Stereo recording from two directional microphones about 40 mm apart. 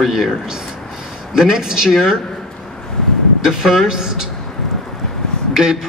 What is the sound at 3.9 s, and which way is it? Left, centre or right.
Speech, centre.